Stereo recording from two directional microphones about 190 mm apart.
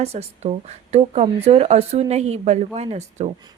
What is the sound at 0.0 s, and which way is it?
A woman's voice, 35° right (ahead or behind).